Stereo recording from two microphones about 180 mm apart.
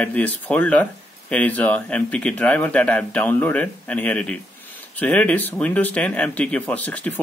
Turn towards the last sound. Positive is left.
turn(degrees=10)  # may be behind; listen again after turning